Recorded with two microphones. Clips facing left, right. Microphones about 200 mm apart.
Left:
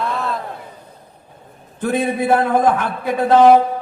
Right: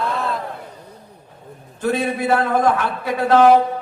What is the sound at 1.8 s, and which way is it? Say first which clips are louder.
A man's voice: left 2 dB; 55° left (ahead or behind).